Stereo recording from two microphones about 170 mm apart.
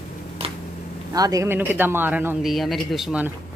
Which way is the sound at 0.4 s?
30° right (ahead or behind).